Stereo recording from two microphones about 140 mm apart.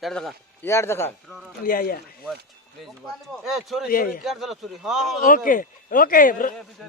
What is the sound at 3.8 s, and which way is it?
Speech, 90° left.